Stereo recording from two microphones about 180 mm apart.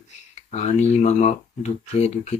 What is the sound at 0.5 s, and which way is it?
Speech, 40° left (ahead or behind).